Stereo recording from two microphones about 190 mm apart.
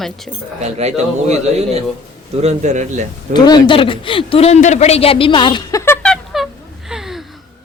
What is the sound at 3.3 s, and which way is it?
Speech, 20° left (ahead or behind).